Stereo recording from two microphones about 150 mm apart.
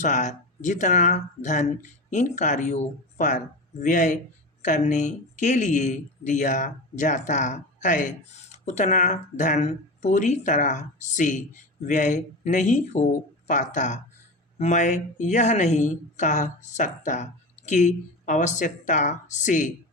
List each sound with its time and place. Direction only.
0.0 s a woman's voice: 55° left (ahead or behind)